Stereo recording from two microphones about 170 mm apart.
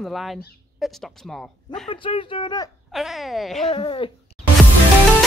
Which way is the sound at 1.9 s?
30° left (ahead or behind).